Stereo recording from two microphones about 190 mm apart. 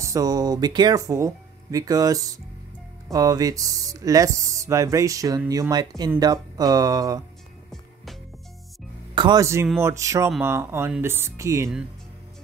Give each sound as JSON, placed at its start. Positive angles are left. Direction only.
{"t": 0.0, "sound": "speech", "side_deg": -20}
{"t": 7.7, "sound": "music", "side_deg": 0}
{"t": 9.1, "sound": "speech", "side_deg": -20}